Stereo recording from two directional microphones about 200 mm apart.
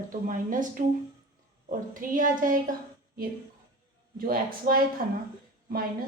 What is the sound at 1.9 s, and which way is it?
Speech, 40° right (ahead or behind).